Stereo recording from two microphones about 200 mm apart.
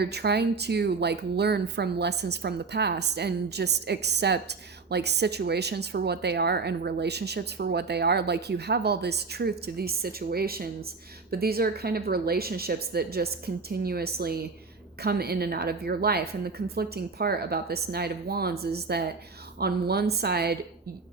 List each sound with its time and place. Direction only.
0.0 s a woman's voice: 55° right (ahead or behind)